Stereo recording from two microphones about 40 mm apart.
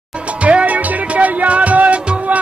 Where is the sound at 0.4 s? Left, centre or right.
Right.